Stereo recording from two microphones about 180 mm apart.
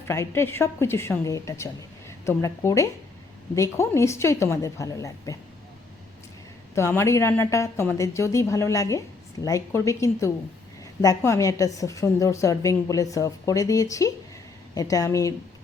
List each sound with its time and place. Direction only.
0.1 s a woman's voice: 15° left (ahead or behind)
6.7 s a woman's voice: 15° left (ahead or behind)